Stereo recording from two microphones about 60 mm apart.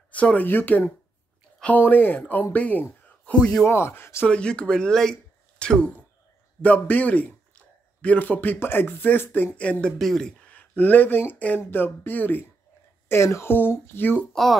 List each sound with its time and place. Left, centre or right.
0.1 s a man's voice: left
3.6 s speech: left
4.3 s speech: centre
6.6 s a man's voice: left
9.6 s speech: centre
9.9 s speech: centre
10.5 s speech: left
13.1 s speech: left
14.3 s speech: centre